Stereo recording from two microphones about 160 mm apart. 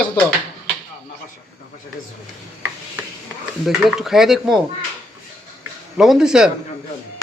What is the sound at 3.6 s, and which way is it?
Speech, centre (ahead or behind).